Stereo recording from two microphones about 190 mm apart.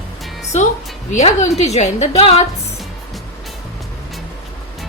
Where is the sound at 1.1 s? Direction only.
35° left (ahead or behind).